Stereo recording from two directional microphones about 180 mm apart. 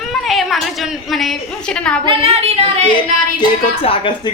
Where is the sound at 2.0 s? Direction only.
30° right (ahead or behind).